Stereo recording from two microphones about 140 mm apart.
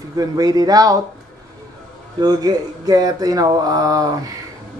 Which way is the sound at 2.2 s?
25° right (ahead or behind).